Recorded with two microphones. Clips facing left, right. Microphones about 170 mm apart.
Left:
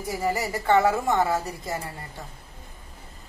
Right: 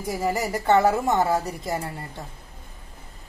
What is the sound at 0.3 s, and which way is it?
Speech, 20° right (ahead or behind).